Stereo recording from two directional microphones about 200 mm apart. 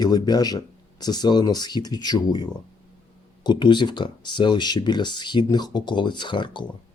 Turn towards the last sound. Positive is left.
turn(degrees=25)  # may be behind; listen again after turning